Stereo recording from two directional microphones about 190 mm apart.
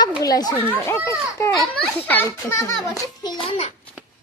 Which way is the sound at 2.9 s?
20° left (ahead or behind).